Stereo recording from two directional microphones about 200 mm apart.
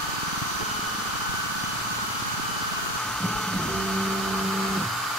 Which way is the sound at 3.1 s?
5° left (ahead or behind).